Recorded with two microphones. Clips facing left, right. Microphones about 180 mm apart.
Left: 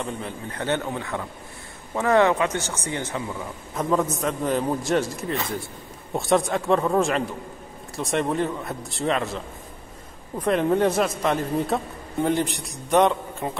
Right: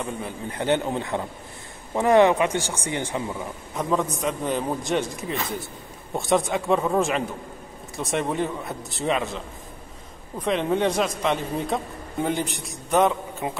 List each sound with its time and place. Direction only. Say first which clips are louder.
0.0 s speech: even; 5° right (ahead or behind)
0.6 s a man's voice: right 3 dB; 20° right (ahead or behind)
3.7 s speech: left 2 dB; centre (ahead or behind)
10.4 s speech: left 2 dB; 5° left (ahead or behind)